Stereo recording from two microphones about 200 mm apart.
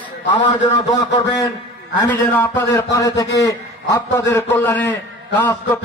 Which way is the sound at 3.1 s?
60° left (ahead or behind).